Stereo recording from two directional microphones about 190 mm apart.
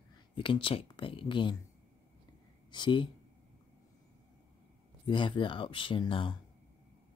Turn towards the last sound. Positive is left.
turn(degrees=25)  # may be behind; listen again after turning